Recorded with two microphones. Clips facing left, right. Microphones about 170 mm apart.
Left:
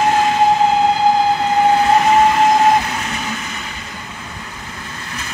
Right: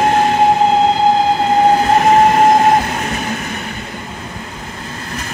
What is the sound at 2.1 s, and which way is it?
Vehicle, 45° right (ahead or behind).